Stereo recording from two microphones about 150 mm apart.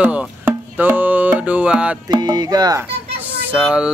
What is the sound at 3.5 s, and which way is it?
Speech, 5° right (ahead or behind).